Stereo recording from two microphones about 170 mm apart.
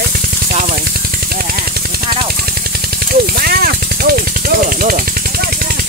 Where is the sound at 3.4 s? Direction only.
65° right (ahead or behind).